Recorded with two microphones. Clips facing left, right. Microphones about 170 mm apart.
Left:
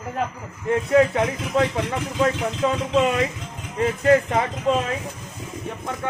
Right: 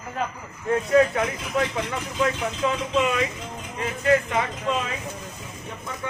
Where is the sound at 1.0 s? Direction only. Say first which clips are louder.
Left 2 dB; 30° left (ahead or behind).